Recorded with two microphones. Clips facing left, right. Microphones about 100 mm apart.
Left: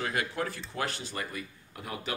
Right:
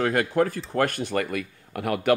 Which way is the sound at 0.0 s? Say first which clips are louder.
Right 10 dB; 50° right (ahead or behind).